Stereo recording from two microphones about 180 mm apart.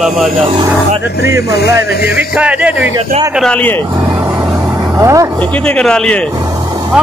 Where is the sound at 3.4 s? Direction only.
5° left (ahead or behind).